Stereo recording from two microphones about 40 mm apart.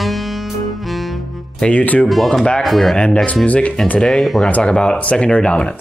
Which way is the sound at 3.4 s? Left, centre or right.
Left.